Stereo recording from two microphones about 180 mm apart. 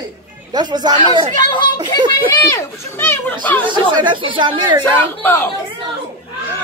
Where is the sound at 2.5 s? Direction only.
15° left (ahead or behind).